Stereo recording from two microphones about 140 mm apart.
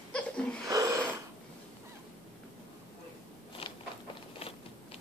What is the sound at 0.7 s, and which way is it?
Snort, 25° right (ahead or behind).